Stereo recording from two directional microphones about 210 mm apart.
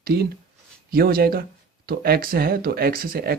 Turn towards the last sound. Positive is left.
turn(degrees=-45)  # may be behind; listen again after turning